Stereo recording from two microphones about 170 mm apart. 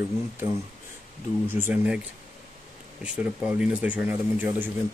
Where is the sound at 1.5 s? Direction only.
10° right (ahead or behind).